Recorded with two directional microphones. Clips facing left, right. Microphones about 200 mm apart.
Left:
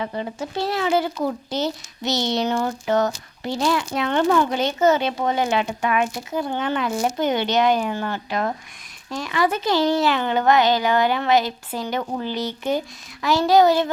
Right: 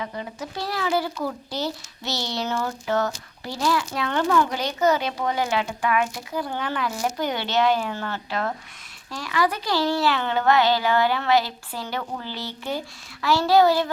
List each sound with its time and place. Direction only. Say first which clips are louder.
0.0 s speech: left 5 dB; 30° left (ahead or behind)